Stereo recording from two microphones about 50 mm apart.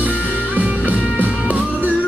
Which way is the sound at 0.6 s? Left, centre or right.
Right.